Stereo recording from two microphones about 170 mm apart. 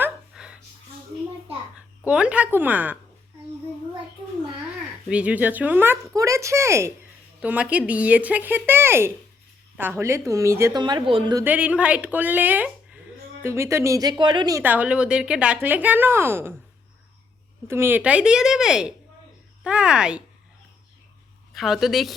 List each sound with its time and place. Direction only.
0.0 s a sound: 5° right (ahead or behind)
2.0 s speech: 5° right (ahead or behind)
5.0 s speech: 5° right (ahead or behind); by 11.4 s 25° right (ahead or behind)
11.4 s speech: 10° right (ahead or behind)
17.7 s speech: 15° right (ahead or behind)
21.5 s a woman's voice: centre (ahead or behind)